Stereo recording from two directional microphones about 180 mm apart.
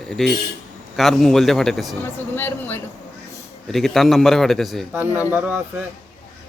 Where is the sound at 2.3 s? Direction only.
10° left (ahead or behind).